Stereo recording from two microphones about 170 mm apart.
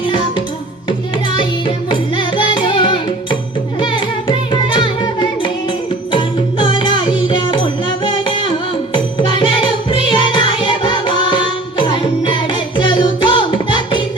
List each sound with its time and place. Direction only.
1.4 s music: 30° left (ahead or behind)